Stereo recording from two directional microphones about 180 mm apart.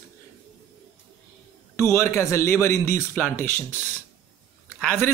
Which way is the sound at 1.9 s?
15° left (ahead or behind).